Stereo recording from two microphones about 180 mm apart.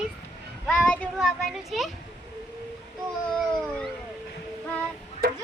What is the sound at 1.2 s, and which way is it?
Child singing, centre (ahead or behind).